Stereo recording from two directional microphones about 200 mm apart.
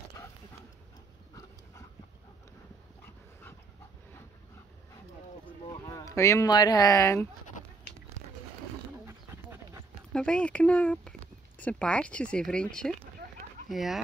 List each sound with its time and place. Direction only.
5.7 s speech: 20° left (ahead or behind)
10.1 s speech: 5° left (ahead or behind)